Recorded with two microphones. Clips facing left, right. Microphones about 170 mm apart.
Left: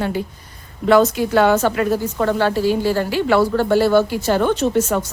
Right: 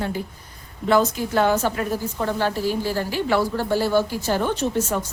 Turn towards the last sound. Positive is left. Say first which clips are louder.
# left 5 dB
turn(degrees=85)